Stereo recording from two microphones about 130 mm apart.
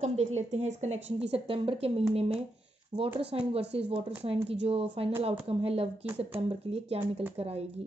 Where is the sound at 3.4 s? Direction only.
45° right (ahead or behind).